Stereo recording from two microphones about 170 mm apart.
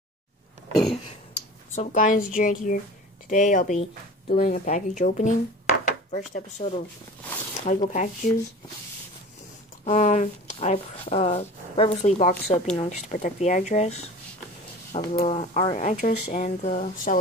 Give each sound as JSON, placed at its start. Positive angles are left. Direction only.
{"t": 1.8, "sound": "speech", "side_deg": 50}
{"t": 9.8, "sound": "speech", "side_deg": 45}
{"t": 14.9, "sound": "speech", "side_deg": 55}
{"t": 15.2, "sound": "speech", "side_deg": 35}